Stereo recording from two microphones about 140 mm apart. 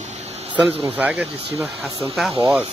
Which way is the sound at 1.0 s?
10° right (ahead or behind).